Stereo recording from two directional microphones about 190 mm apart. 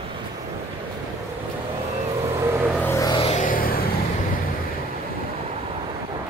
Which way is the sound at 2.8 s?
15° left (ahead or behind).